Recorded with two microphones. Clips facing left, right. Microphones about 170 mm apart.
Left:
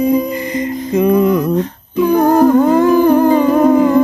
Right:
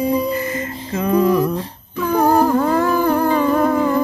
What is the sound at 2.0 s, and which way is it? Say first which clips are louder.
Humming: left 5 dB; 20° left (ahead or behind).